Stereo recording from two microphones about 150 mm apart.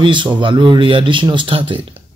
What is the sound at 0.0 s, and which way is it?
Speech, 30° right (ahead or behind).